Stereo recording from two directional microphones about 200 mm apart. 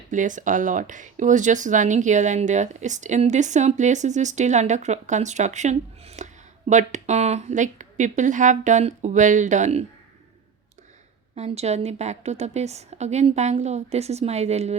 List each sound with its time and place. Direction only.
0.1 s speech: 40° right (ahead or behind)
11.3 s speech: 30° right (ahead or behind)